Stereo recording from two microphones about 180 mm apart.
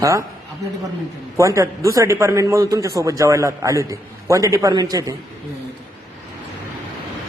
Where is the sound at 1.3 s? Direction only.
15° right (ahead or behind).